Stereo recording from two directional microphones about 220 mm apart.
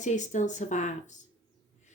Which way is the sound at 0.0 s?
35° left (ahead or behind).